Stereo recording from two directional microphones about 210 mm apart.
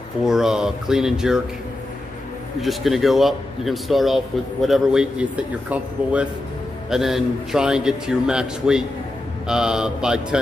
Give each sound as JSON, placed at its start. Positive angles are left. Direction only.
{"t": 0.2, "sound": "speech", "side_deg": 0}
{"t": 2.6, "sound": "speech", "side_deg": 0}